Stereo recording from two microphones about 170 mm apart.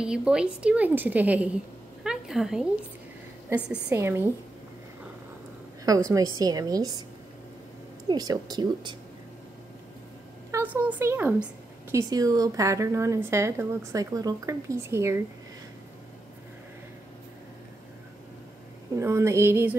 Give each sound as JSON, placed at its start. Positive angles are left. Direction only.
{"t": 0.0, "sound": "a woman's voice", "side_deg": -5}
{"t": 2.0, "sound": "a sound", "side_deg": 0}
{"t": 3.7, "sound": "a woman's voice", "side_deg": -15}
{"t": 5.9, "sound": "a woman's voice", "side_deg": -20}
{"t": 8.1, "sound": "a woman's voice", "side_deg": -25}
{"t": 10.5, "sound": "a woman's voice", "side_deg": -10}
{"t": 18.9, "sound": "a woman's voice", "side_deg": -15}